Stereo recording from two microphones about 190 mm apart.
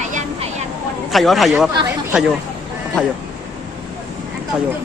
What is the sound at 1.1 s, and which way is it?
Speech, centre (ahead or behind).